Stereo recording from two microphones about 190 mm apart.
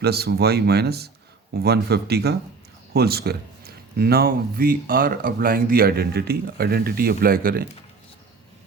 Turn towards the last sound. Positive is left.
turn(degrees=-50)  # may be behind; listen again after turning